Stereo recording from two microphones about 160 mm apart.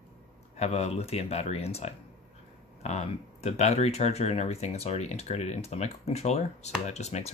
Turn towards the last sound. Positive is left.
turn(degrees=45)  # may be behind; listen again after turning